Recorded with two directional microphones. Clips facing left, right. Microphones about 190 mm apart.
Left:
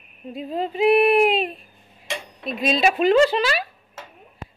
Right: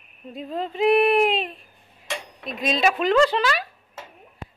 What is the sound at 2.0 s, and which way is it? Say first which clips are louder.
Cutlery: left 2 dB; 30° left (ahead or behind).